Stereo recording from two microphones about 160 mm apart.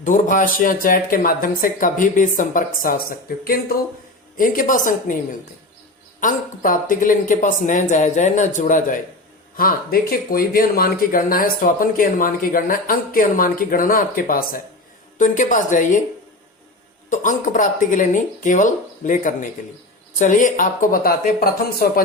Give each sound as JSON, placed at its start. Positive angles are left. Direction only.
{"t": 0.0, "sound": "speech", "side_deg": 55}
{"t": 6.1, "sound": "speech", "side_deg": 55}
{"t": 9.6, "sound": "speech", "side_deg": 65}
{"t": 17.1, "sound": "speech", "side_deg": 55}